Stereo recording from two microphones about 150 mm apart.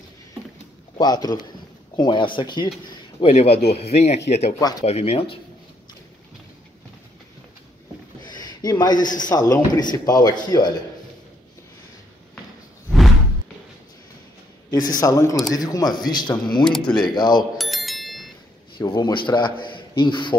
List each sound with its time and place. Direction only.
0.9 s speech: 25° left (ahead or behind)
3.2 s speech: 40° left (ahead or behind)
4.6 s speech: 25° left (ahead or behind)
4.8 s speech: 40° left (ahead or behind)
8.2 s a man's voice: 30° left (ahead or behind)
14.7 s speech: 25° left (ahead or behind)
16.6 s speech: 5° left (ahead or behind)
17.1 s speech: 30° left (ahead or behind)
17.6 s bicycle bell: centre (ahead or behind)
18.8 s speech: 30° left (ahead or behind)